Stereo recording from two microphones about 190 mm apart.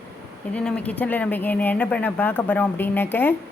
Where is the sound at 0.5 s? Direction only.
5° left (ahead or behind).